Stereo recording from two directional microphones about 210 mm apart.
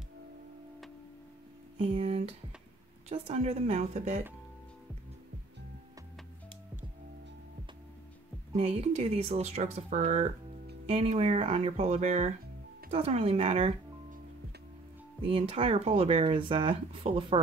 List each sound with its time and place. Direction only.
1.8 s speech: 30° right (ahead or behind)
8.5 s speech: 30° right (ahead or behind)
15.2 s speech: 25° right (ahead or behind)